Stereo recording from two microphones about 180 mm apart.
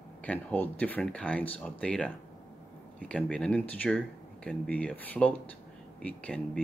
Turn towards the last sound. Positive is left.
turn(degrees=5)  # may be behind; listen again after turning